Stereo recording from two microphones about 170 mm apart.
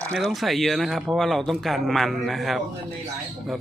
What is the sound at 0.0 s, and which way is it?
Speech, 5° left (ahead or behind).